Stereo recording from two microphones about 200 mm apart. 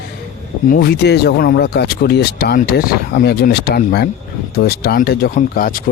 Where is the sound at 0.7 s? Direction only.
55° left (ahead or behind).